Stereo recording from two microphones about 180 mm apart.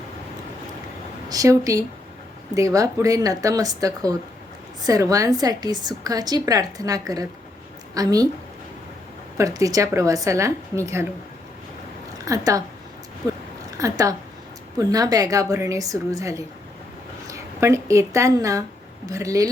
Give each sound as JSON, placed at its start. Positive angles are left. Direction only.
{"t": 1.3, "sound": "a woman's voice", "side_deg": -20}
{"t": 9.4, "sound": "a woman's voice", "side_deg": -20}
{"t": 12.2, "sound": "a woman's voice", "side_deg": -20}
{"t": 13.7, "sound": "a woman's voice", "side_deg": -20}